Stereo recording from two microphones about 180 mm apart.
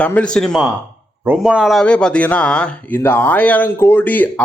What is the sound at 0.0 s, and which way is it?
A man's voice, 5° left (ahead or behind).